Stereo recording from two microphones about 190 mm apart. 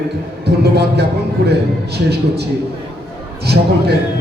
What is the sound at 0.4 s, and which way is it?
A man's voice, 60° right (ahead or behind).